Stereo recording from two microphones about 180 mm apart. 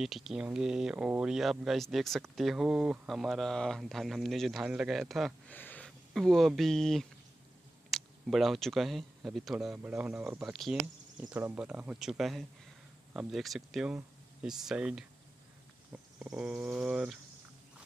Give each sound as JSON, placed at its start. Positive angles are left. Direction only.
{"t": 0.0, "sound": "speech", "side_deg": 0}